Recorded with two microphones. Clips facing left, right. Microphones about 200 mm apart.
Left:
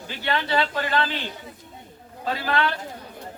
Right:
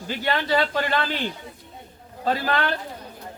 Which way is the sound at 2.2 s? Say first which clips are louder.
Right 2 dB; 45° right (ahead or behind).